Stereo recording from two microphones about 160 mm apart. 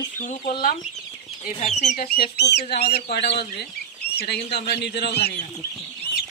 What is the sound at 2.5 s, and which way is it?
Speech, 85° left.